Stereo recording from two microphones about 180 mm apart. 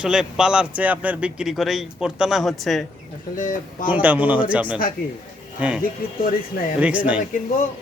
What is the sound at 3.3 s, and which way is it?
Speech, 50° left (ahead or behind).